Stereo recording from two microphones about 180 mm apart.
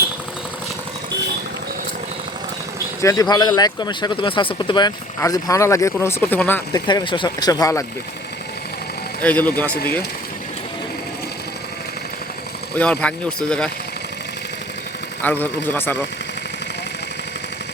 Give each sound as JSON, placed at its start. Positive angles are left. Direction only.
{"t": 3.0, "sound": "speech", "side_deg": 20}
{"t": 6.8, "sound": "speech", "side_deg": 25}
{"t": 9.2, "sound": "speech", "side_deg": 10}
{"t": 12.7, "sound": "speech", "side_deg": 5}
{"t": 15.2, "sound": "speech", "side_deg": 10}